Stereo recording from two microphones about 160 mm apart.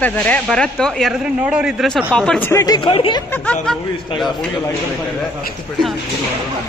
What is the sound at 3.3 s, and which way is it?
Speech, 10° left (ahead or behind).